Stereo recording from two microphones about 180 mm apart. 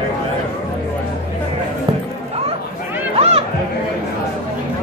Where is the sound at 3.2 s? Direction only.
35° right (ahead or behind).